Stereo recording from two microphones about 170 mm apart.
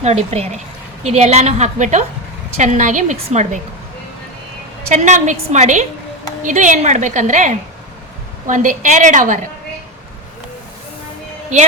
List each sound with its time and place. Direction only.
0.0 s a woman's voice: 40° right (ahead or behind)
4.9 s a woman's voice: 45° right (ahead or behind)